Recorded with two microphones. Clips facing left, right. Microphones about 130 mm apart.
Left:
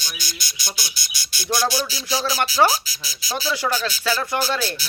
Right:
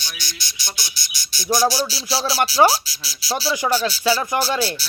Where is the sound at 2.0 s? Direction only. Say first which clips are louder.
Even; 35° right (ahead or behind).